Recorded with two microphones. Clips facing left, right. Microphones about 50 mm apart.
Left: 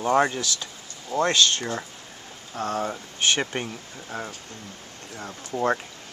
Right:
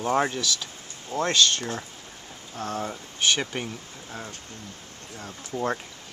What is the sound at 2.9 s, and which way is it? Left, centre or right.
Speech, centre.